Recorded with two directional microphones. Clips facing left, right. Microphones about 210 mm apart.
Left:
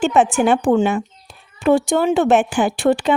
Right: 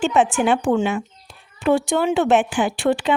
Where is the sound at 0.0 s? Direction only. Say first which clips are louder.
Left 2 dB; 45° left (ahead or behind).